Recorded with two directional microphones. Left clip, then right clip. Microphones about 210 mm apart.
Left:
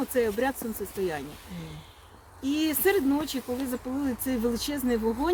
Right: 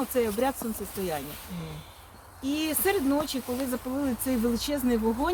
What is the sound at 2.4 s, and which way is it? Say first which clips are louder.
Speech: left 2 dB; 20° left (ahead or behind).